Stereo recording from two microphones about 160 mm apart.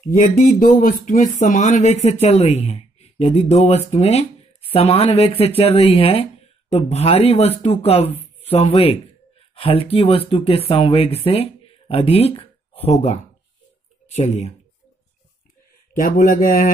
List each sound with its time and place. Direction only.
0.0 s speech: 55° left (ahead or behind)
14.1 s speech: 45° left (ahead or behind)
15.9 s speech: 55° left (ahead or behind)